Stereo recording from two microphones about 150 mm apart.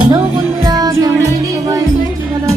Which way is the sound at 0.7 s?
25° right (ahead or behind).